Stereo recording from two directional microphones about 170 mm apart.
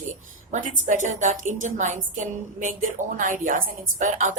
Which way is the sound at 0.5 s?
45° right (ahead or behind).